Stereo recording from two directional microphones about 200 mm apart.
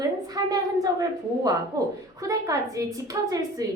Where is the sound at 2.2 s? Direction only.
15° right (ahead or behind).